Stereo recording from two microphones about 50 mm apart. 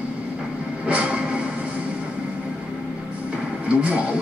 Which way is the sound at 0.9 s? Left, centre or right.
Right.